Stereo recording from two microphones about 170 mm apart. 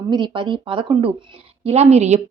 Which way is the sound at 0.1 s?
25° right (ahead or behind).